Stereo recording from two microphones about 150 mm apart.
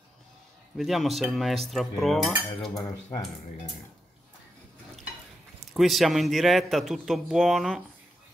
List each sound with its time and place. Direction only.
0.7 s a man's voice: centre (ahead or behind)
2.7 s cutlery: 25° left (ahead or behind)
5.7 s a man's voice: centre (ahead or behind)